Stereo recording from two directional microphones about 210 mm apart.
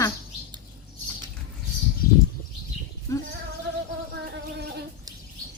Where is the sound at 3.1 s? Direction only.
15° left (ahead or behind).